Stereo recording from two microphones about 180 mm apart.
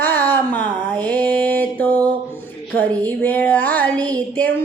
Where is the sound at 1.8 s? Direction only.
20° right (ahead or behind).